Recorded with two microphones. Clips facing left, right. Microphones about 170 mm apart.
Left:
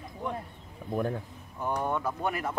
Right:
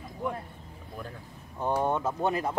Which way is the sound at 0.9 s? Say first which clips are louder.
Left 11 dB; 55° left (ahead or behind).